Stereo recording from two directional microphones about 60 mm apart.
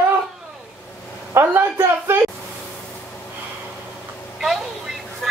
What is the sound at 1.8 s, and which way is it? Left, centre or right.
Speech, right.